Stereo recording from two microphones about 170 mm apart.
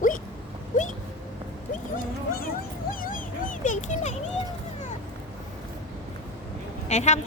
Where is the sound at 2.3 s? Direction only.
60° left (ahead or behind).